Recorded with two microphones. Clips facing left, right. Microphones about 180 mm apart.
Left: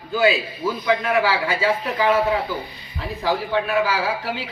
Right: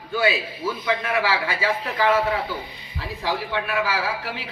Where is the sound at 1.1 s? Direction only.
25° left (ahead or behind).